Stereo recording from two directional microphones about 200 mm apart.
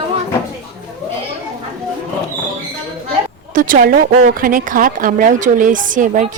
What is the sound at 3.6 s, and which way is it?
Speech, 45° right (ahead or behind).